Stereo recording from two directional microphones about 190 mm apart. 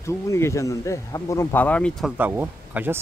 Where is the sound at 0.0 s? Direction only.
15° left (ahead or behind).